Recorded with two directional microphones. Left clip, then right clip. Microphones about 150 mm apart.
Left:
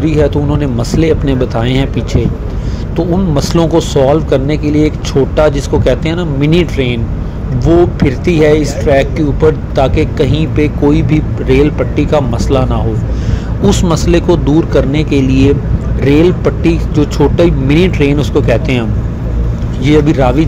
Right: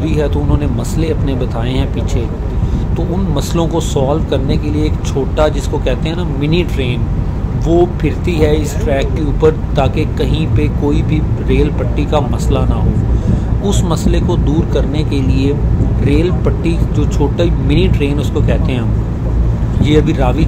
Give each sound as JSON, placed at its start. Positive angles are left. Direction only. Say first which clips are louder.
{"t": 0.0, "sound": "speech", "louder": "left 5 dB", "side_deg": 25}
{"t": 3.3, "sound": "speech", "louder": "left 6 dB", "side_deg": 30}
{"t": 13.7, "sound": "speech", "louder": "left 6 dB", "side_deg": 35}